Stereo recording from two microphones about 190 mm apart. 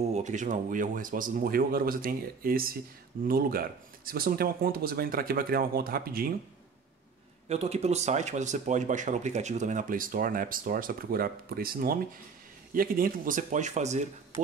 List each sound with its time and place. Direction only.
0.1 s speech: 40° right (ahead or behind)
7.4 s speech: 35° right (ahead or behind)